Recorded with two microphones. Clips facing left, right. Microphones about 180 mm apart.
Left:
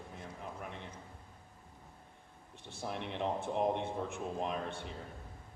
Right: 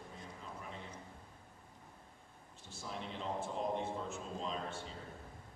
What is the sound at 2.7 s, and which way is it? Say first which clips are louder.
A man's voice: left 5 dB; 60° left (ahead or behind).